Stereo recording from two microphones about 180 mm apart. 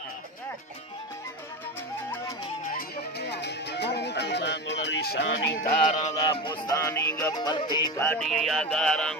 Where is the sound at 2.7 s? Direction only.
65° left (ahead or behind); by 5.3 s 80° left.